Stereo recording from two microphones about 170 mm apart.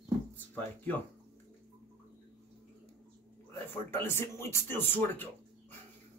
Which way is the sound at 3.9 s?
15° left (ahead or behind).